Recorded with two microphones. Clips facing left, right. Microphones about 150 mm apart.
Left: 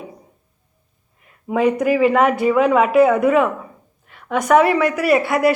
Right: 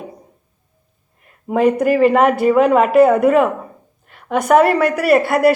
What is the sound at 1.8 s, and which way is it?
Speech, 45° right (ahead or behind).